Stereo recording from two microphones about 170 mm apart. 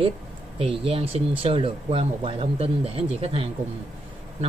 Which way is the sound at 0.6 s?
35° right (ahead or behind).